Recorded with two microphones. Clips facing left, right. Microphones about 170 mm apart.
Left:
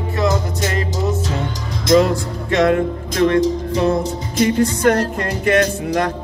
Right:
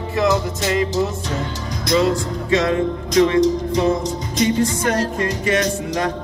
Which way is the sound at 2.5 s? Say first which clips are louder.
Left 2 dB; 55° left (ahead or behind).